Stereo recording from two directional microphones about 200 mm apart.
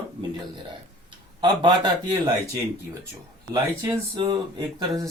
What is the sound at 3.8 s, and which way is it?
Speech, 20° right (ahead or behind).